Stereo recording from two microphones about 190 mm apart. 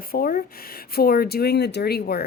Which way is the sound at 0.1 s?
45° left (ahead or behind).